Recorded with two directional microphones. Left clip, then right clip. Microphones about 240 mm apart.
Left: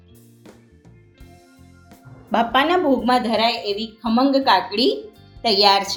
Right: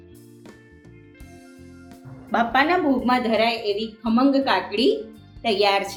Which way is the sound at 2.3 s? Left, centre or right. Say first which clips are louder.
Left 2 dB; left.